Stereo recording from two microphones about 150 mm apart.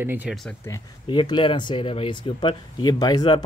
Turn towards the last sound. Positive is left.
turn(degrees=25)  # may be behind; listen again after turning